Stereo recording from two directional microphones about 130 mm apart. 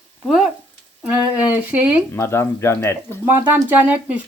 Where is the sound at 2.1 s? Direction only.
20° left (ahead or behind).